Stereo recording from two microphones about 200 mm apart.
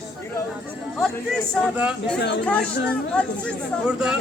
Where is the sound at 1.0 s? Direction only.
Centre (ahead or behind).